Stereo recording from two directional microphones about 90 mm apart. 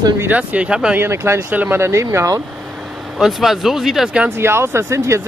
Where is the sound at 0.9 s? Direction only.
25° right (ahead or behind).